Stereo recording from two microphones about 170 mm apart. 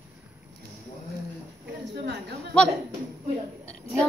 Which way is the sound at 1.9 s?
75° right (ahead or behind).